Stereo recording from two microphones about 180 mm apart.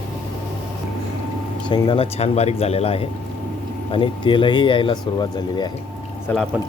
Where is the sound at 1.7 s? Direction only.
25° left (ahead or behind).